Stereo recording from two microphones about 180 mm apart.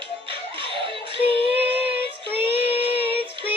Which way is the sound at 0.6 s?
30° right (ahead or behind).